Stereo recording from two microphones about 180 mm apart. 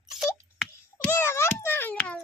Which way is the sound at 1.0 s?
15° left (ahead or behind).